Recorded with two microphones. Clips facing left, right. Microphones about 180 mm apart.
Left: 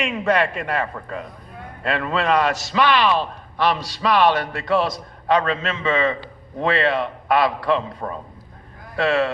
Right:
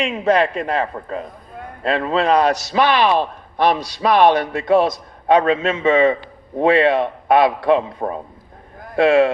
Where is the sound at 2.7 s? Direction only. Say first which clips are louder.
Right 2 dB; 50° right (ahead or behind).